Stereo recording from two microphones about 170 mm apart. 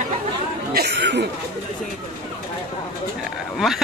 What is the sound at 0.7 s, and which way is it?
Speech, 75° right (ahead or behind).